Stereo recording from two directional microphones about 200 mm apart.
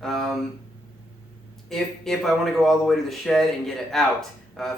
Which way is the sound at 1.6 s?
Centre (ahead or behind).